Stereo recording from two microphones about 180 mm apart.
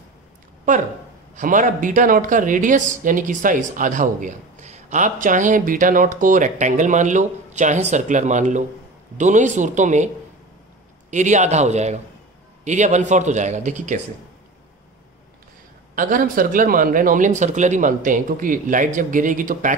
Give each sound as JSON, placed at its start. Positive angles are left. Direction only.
{"t": 1.3, "sound": "speech", "side_deg": -45}
{"t": 11.1, "sound": "speech", "side_deg": -40}
{"t": 15.9, "sound": "speech", "side_deg": -50}